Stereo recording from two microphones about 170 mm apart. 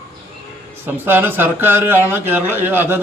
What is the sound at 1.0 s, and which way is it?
Speech, 10° right (ahead or behind).